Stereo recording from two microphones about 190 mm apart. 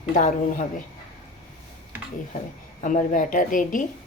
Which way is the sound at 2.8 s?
45° left (ahead or behind).